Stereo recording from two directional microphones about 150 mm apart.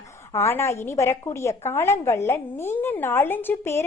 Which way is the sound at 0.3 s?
15° left (ahead or behind).